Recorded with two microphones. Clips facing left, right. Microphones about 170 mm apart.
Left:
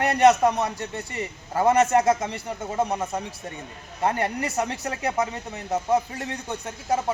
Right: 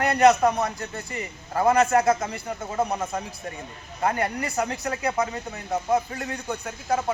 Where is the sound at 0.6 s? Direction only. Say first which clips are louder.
Left 1 dB; 20° left (ahead or behind).